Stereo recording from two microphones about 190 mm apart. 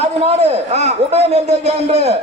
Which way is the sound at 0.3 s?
35° right (ahead or behind).